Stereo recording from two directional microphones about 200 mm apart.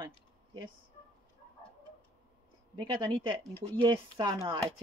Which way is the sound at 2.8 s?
25° right (ahead or behind).